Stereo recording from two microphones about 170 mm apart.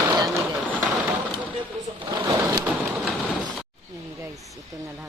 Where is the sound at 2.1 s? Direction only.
20° right (ahead or behind).